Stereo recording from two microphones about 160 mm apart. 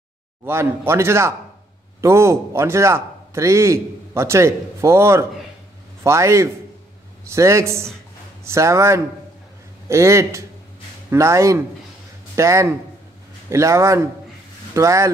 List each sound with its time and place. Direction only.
0.5 s a man's voice: 15° right (ahead or behind)